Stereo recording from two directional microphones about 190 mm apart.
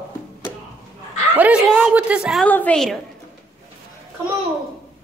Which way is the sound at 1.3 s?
5° right (ahead or behind).